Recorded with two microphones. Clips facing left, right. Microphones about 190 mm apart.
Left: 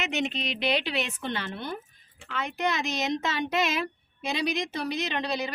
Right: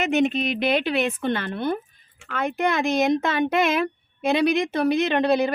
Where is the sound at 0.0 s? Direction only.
50° right (ahead or behind).